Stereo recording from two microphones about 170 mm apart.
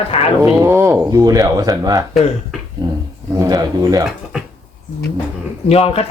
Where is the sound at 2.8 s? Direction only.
25° right (ahead or behind).